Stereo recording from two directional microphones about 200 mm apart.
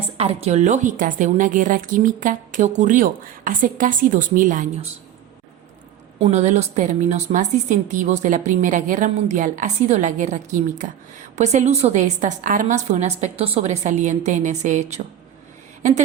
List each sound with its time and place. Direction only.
0.2 s speech: 30° right (ahead or behind)
6.1 s speech: 30° right (ahead or behind)